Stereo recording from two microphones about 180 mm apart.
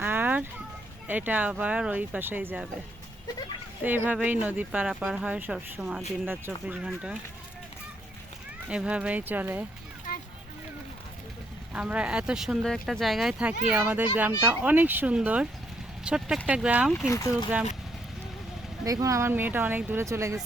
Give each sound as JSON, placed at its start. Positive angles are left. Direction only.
{"t": 0.0, "sound": "a sound", "side_deg": -10}
{"t": 1.0, "sound": "speech", "side_deg": -10}
{"t": 3.8, "sound": "speech", "side_deg": -10}
{"t": 8.7, "sound": "speech", "side_deg": -5}
{"t": 11.7, "sound": "speech", "side_deg": -5}
{"t": 17.1, "sound": "speech", "side_deg": 20}
{"t": 18.9, "sound": "speech", "side_deg": -20}